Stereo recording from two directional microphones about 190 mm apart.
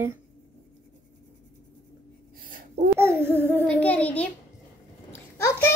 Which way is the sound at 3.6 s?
5° left (ahead or behind).